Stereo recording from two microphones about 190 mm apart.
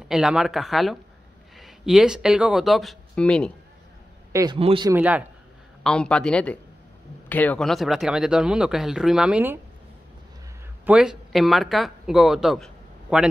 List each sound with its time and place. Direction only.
0.1 s speech: 5° right (ahead or behind)
4.3 s a man's voice: 15° right (ahead or behind)
4.6 s speech: 30° right (ahead or behind)
4.8 s a man's voice: 10° right (ahead or behind)
5.9 s speech: 5° left (ahead or behind)
10.9 s speech: 5° right (ahead or behind)